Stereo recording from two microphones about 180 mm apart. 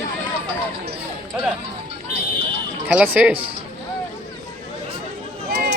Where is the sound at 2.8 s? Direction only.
5° right (ahead or behind).